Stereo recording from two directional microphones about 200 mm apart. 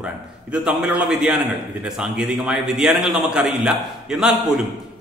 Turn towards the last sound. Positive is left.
turn(degrees=-5)  # may be behind; listen again after turning